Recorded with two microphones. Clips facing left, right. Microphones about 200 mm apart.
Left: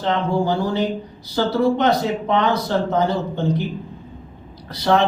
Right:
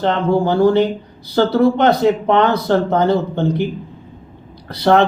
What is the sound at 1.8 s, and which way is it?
Speech, 60° right (ahead or behind).